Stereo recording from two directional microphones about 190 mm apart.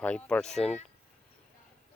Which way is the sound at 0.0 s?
5° left (ahead or behind).